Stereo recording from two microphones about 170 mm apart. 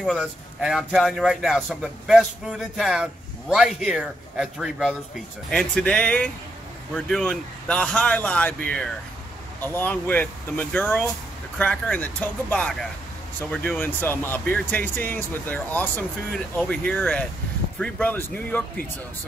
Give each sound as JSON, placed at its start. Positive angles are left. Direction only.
{"t": 0.0, "sound": "a man's voice", "side_deg": 0}